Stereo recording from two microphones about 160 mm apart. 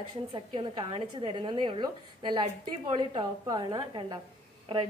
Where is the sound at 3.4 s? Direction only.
25° right (ahead or behind).